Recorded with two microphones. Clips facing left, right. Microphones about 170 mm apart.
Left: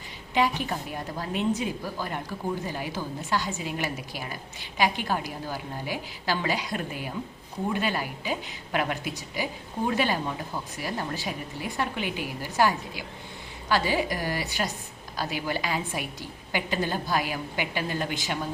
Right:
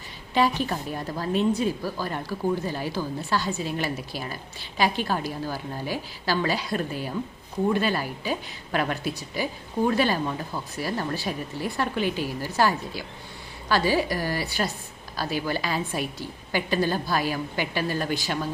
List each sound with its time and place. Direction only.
0.3 s a woman's voice: 15° left (ahead or behind)